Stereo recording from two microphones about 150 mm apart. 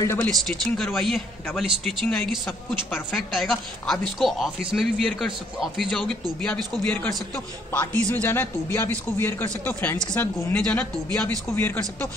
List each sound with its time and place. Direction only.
0.0 s a man's voice: 15° left (ahead or behind)
0.3 s a man's voice: centre (ahead or behind)